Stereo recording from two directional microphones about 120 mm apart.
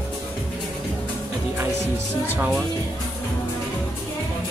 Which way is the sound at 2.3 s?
10° right (ahead or behind).